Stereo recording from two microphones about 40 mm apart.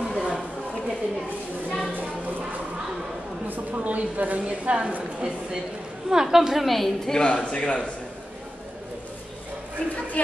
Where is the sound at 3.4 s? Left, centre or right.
Right.